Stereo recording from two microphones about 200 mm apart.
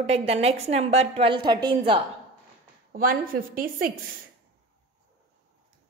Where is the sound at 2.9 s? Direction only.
45° right (ahead or behind).